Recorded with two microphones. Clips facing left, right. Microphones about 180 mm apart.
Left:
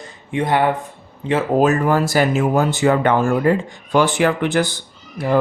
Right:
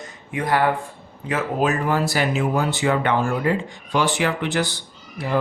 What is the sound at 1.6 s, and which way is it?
Speech, 45° left (ahead or behind).